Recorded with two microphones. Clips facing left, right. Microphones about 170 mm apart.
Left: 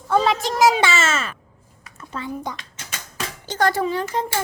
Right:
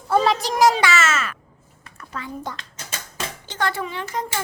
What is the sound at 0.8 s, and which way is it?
Speech, 30° left (ahead or behind).